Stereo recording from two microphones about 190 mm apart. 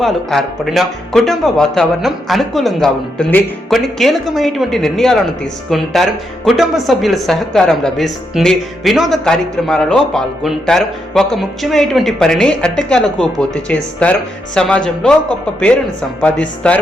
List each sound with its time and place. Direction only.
0.0 s speech: centre (ahead or behind)
16.2 s speech: 5° left (ahead or behind)